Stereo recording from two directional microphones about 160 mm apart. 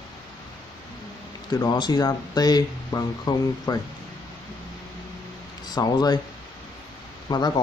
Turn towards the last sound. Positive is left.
turn(degrees=25)  # may be behind; listen again after turning